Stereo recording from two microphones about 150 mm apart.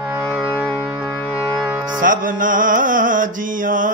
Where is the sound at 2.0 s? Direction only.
65° right (ahead or behind).